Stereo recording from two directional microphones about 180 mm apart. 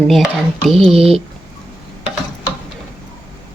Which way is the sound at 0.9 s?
35° right (ahead or behind).